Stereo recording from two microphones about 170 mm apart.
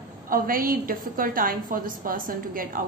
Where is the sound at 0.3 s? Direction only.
55° right (ahead or behind).